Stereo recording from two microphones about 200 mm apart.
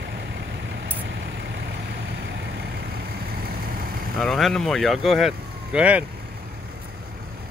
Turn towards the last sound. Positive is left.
turn(degrees=-5)  # may be behind; listen again after turning